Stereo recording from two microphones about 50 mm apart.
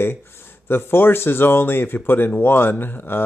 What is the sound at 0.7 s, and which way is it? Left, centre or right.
Speech, left.